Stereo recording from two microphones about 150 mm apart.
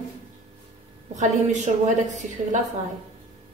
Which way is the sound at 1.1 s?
50° right (ahead or behind).